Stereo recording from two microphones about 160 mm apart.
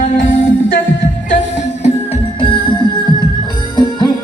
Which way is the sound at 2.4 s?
30° left (ahead or behind).